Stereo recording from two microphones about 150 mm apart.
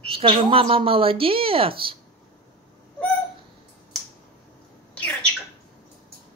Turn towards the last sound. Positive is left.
turn(degrees=10)  # may be behind; listen again after turning